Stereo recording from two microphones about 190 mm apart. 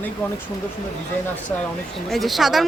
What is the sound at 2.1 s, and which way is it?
Speech, centre (ahead or behind).